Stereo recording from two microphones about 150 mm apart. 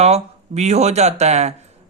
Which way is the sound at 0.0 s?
45° right (ahead or behind).